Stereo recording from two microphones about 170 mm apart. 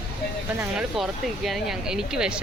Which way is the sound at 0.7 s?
Centre (ahead or behind).